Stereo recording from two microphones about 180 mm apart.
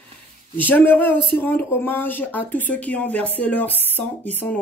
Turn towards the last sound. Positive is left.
turn(degrees=10)  # may be behind; listen again after turning